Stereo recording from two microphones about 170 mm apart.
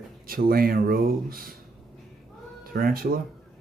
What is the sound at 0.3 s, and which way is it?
Speech, 60° right (ahead or behind).